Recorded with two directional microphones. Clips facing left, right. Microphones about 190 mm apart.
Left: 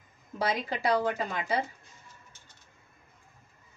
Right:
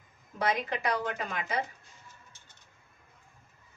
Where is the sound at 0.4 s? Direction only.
30° left (ahead or behind).